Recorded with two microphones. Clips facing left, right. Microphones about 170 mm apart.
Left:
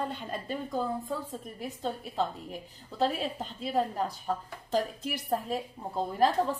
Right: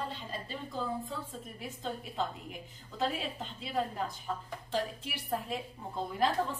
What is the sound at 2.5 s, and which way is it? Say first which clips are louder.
A woman's voice: left 4 dB; 35° left (ahead or behind).